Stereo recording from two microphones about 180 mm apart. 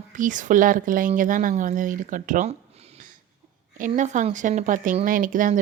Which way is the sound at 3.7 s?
45° right (ahead or behind).